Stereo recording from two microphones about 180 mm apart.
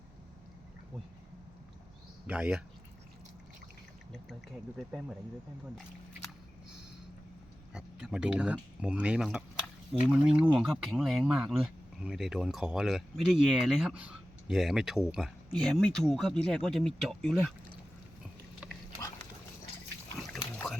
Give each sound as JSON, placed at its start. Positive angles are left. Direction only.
{"t": 2.2, "sound": "speech", "side_deg": -5}
{"t": 4.9, "sound": "speech", "side_deg": 0}
{"t": 7.7, "sound": "speech", "side_deg": -5}
{"t": 18.9, "sound": "dog", "side_deg": 20}
{"t": 20.1, "sound": "a sound", "side_deg": 5}